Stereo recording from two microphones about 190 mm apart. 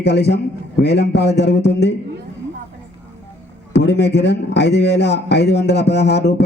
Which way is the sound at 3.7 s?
65° left (ahead or behind).